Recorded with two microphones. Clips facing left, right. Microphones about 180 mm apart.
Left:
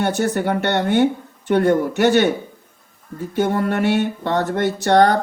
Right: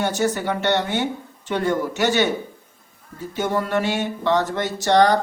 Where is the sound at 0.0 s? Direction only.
55° left (ahead or behind).